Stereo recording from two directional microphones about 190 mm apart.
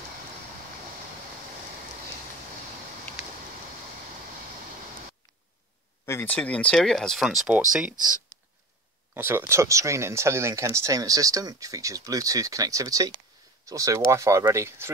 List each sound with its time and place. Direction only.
6.0 s speech: 10° left (ahead or behind); by 7.6 s 5° right (ahead or behind)
9.1 s speech: 10° right (ahead or behind)